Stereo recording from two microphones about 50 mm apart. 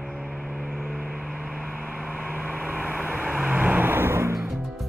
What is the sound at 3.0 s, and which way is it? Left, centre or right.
Vehicle, right.